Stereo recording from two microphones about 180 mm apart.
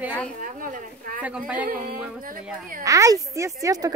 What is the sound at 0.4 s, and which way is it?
Speech, 50° right (ahead or behind).